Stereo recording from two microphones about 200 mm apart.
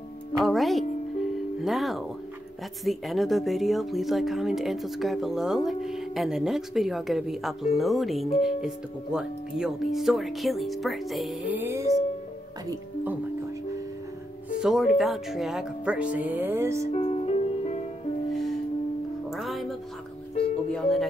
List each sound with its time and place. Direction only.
0.4 s speech: centre (ahead or behind)
14.6 s speech: centre (ahead or behind)
16.9 s music: 30° left (ahead or behind)
18.3 s music: centre (ahead or behind)
20.7 s speech: centre (ahead or behind)